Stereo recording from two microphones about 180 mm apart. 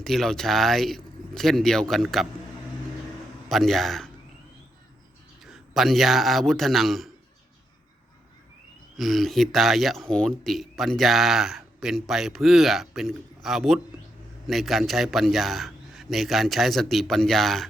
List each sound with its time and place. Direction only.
0.0 s speech: centre (ahead or behind)
3.5 s speech: centre (ahead or behind)
5.5 s a man's voice: centre (ahead or behind)
9.0 s speech: centre (ahead or behind)